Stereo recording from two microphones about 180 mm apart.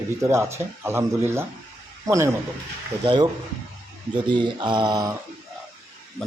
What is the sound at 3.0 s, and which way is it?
Mantra, 25° right (ahead or behind).